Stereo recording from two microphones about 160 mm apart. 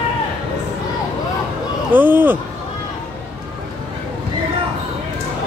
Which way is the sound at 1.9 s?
10° right (ahead or behind).